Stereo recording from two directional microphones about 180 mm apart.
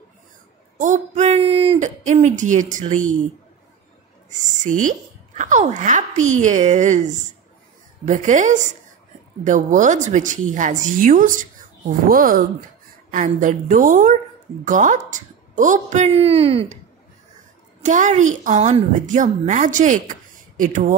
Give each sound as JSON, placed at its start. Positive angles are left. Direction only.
{"t": 0.7, "sound": "speech", "side_deg": -45}
{"t": 4.3, "sound": "a woman's voice", "side_deg": -45}
{"t": 17.8, "sound": "a woman's voice", "side_deg": -45}